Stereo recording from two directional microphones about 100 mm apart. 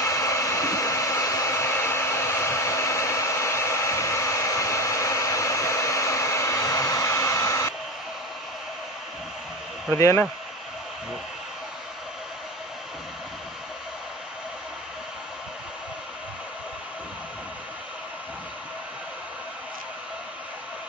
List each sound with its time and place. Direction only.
0.0 s hair dryer: 30° left (ahead or behind)
9.9 s speech: 25° left (ahead or behind)